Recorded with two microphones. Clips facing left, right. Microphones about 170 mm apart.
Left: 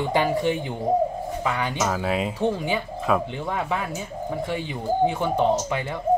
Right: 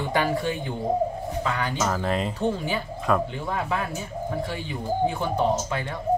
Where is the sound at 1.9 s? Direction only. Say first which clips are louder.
Left 1 dB; 5° left (ahead or behind).